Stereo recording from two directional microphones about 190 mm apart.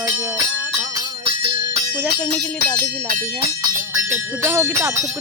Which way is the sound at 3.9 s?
10° right (ahead or behind).